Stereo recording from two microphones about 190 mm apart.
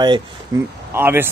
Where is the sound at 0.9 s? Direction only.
10° right (ahead or behind).